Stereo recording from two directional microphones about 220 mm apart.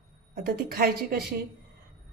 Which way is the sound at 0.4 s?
45° right (ahead or behind).